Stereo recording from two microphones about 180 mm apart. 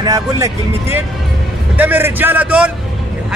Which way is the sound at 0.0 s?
20° right (ahead or behind).